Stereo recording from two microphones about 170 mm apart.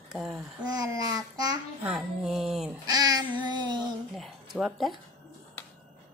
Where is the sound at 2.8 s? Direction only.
25° right (ahead or behind).